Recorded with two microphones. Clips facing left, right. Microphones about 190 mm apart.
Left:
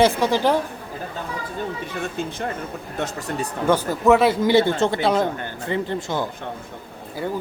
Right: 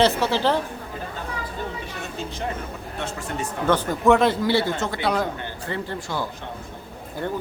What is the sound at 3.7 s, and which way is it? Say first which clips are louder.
Speech: left 1 dB; 5° left (ahead or behind).